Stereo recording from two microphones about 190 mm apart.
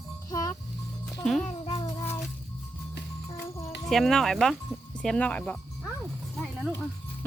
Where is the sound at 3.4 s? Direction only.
15° left (ahead or behind).